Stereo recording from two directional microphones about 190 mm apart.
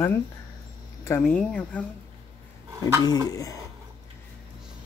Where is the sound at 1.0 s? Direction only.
10° left (ahead or behind).